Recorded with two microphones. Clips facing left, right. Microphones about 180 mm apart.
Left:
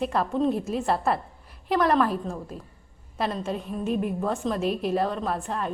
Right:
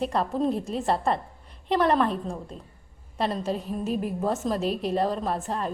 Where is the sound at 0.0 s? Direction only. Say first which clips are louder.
Left 1 dB; centre (ahead or behind).